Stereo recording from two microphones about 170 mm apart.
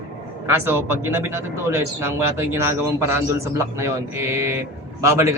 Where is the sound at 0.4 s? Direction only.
15° right (ahead or behind).